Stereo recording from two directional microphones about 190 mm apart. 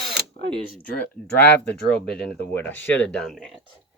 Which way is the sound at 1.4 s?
10° left (ahead or behind).